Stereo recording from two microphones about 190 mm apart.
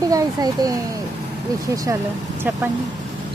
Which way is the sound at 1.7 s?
20° right (ahead or behind).